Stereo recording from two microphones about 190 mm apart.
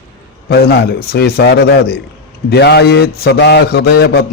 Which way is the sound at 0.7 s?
55° left (ahead or behind).